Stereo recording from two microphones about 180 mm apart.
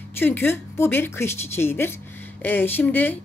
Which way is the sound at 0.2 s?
10° left (ahead or behind).